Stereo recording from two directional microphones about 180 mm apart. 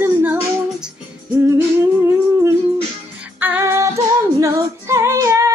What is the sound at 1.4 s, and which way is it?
Humming, 15° right (ahead or behind).